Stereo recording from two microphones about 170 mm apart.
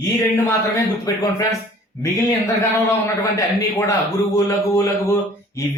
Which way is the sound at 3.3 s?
20° left (ahead or behind).